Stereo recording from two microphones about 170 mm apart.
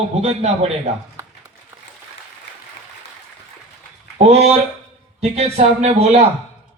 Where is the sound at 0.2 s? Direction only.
40° right (ahead or behind).